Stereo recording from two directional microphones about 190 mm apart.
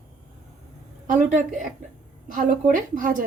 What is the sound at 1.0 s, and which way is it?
A woman's voice, 45° right (ahead or behind).